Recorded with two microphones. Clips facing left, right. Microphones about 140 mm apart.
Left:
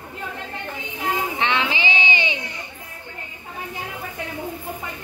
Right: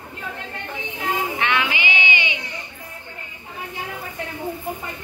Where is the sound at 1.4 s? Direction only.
25° left (ahead or behind).